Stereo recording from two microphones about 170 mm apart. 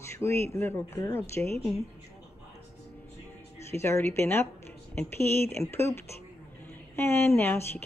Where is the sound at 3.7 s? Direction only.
15° left (ahead or behind).